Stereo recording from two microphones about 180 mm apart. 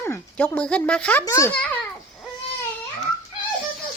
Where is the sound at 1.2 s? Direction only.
15° left (ahead or behind).